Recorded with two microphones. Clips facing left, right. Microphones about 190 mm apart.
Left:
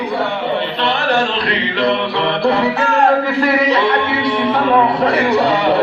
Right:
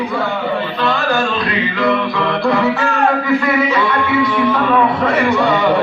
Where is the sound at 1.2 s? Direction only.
30° left (ahead or behind).